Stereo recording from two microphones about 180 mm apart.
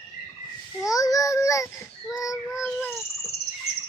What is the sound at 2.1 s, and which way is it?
Speech, 20° left (ahead or behind).